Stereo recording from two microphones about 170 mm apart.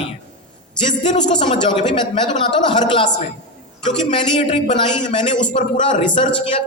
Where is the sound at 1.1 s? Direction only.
45° left (ahead or behind).